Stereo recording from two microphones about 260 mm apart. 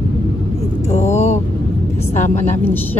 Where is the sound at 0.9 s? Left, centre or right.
Left.